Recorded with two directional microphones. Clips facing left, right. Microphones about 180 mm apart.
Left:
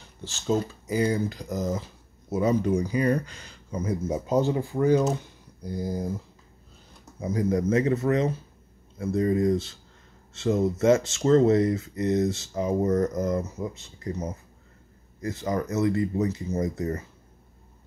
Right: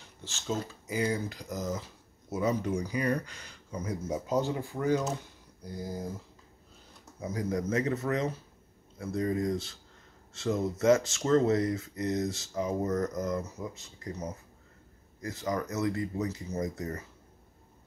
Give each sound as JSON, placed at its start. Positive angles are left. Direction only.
{"t": 0.2, "sound": "speech", "side_deg": 35}
{"t": 7.2, "sound": "speech", "side_deg": 25}